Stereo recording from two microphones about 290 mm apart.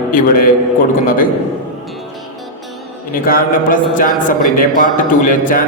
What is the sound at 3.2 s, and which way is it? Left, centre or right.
A man's voice, left.